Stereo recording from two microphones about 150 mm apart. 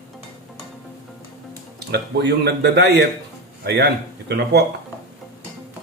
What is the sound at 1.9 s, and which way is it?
Speech, 90° right.